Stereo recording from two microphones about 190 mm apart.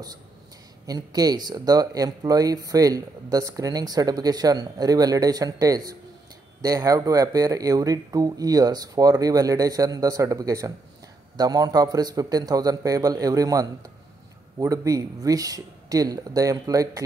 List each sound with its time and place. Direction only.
0.8 s speech: 20° right (ahead or behind)